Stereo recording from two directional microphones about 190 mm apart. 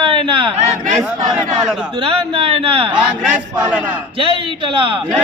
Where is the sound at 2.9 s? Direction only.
5° right (ahead or behind).